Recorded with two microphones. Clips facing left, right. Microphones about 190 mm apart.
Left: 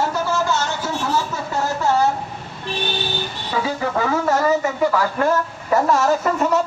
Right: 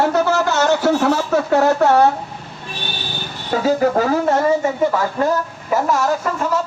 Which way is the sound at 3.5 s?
45° right (ahead or behind).